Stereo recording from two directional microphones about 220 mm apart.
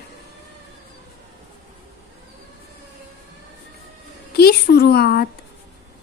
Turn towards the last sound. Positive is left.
turn(degrees=45)  # may be behind; listen again after turning